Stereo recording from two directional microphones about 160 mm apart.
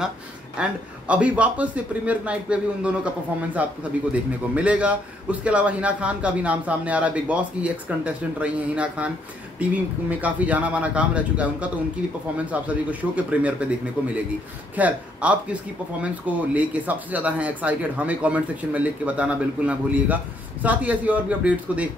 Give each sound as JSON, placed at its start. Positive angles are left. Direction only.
{"t": 0.6, "sound": "a man's voice", "side_deg": -5}
{"t": 14.8, "sound": "a man's voice", "side_deg": -10}